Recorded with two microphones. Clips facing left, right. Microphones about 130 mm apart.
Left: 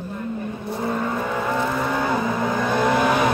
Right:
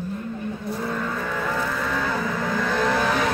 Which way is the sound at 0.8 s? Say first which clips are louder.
Left 6 dB; 25° left (ahead or behind).